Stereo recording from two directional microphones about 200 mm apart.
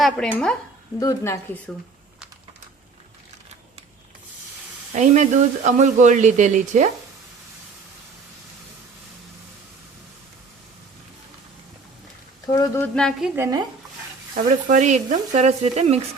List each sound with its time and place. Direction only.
0.0 s speech: 5° left (ahead or behind)
0.9 s speech: 15° left (ahead or behind)
4.9 s speech: 40° right (ahead or behind)
12.5 s speech: 15° left (ahead or behind); by 13.6 s 10° right (ahead or behind)
14.3 s speech: 40° right (ahead or behind)